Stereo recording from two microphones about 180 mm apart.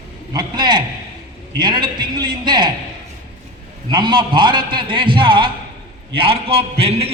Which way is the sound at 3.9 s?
25° right (ahead or behind).